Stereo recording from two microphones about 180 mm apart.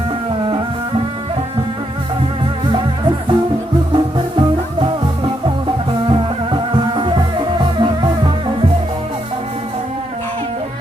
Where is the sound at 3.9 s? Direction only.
25° right (ahead or behind).